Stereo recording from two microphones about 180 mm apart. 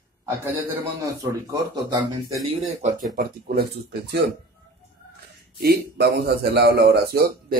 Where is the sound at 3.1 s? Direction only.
60° right (ahead or behind).